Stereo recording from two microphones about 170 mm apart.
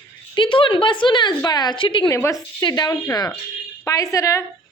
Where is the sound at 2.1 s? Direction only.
15° left (ahead or behind).